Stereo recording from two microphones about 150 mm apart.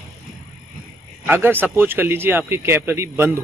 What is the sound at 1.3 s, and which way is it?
Speech, 15° right (ahead or behind).